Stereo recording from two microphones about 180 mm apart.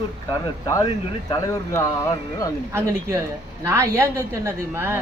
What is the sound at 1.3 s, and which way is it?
Speech, 15° left (ahead or behind).